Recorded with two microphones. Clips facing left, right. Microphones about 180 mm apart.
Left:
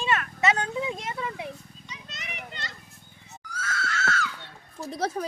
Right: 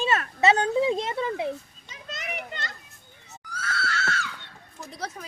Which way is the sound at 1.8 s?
50° right (ahead or behind).